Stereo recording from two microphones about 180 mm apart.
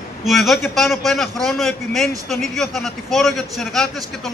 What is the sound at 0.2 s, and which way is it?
Speech, centre (ahead or behind).